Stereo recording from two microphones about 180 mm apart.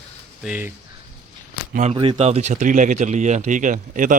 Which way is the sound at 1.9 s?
30° right (ahead or behind).